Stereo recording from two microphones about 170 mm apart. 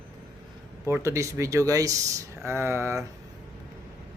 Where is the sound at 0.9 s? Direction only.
15° right (ahead or behind).